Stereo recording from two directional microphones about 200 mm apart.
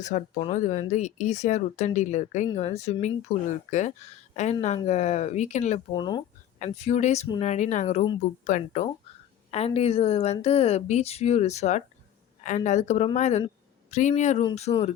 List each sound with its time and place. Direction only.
0.0 s speech: 35° left (ahead or behind)
5.9 s speech: 20° left (ahead or behind)
6.7 s speech: 35° left (ahead or behind)